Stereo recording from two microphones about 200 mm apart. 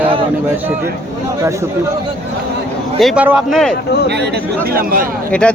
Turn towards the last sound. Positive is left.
turn(degrees=5)  # may be behind; listen again after turning